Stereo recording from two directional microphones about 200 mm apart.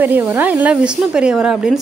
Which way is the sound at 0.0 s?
10° right (ahead or behind).